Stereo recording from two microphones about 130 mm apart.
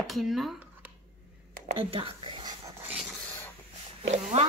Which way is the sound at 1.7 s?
45° right (ahead or behind).